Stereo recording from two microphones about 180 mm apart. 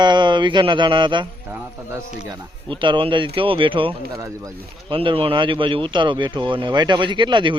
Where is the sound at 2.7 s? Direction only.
30° right (ahead or behind).